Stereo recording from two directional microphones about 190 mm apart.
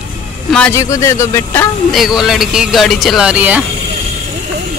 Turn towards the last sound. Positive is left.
turn(degrees=-5)  # may be behind; listen again after turning